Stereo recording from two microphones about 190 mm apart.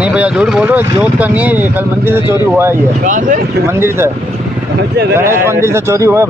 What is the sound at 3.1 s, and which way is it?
Speech, 45° right (ahead or behind).